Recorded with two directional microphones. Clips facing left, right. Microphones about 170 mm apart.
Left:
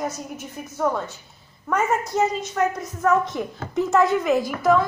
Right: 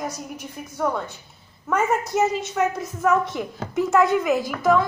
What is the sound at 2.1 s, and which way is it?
A woman's voice, 10° right (ahead or behind).